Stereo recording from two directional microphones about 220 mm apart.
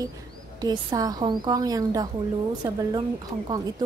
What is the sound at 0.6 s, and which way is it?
A woman's voice, 15° right (ahead or behind).